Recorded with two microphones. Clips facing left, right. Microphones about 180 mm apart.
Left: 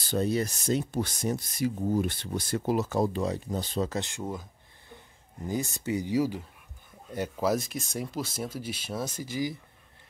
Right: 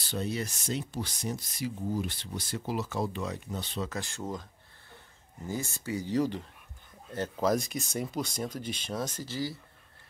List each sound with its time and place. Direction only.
0.0 s speech: 40° left (ahead or behind)
3.9 s speech: 20° left (ahead or behind)
6.1 s speech: 10° left (ahead or behind)